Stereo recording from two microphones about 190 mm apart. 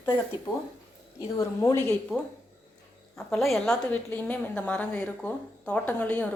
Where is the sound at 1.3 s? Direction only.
15° left (ahead or behind).